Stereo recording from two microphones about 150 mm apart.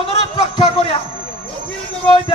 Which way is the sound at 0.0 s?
40° left (ahead or behind).